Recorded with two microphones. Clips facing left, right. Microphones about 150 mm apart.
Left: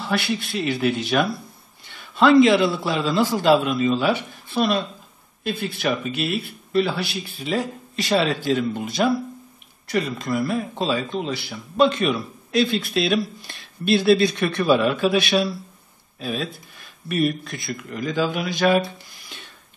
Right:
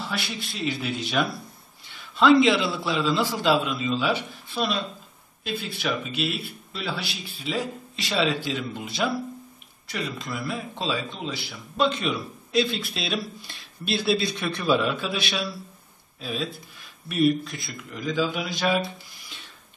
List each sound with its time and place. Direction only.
0.4 s speech: 60° left (ahead or behind)
2.1 s speech: 50° left (ahead or behind)
5.4 s speech: 50° left (ahead or behind)